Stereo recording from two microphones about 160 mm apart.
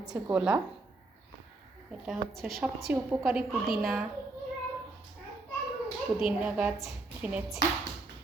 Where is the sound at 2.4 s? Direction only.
70° right (ahead or behind).